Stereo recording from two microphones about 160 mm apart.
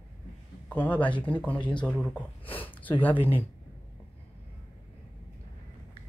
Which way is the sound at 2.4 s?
35° left (ahead or behind).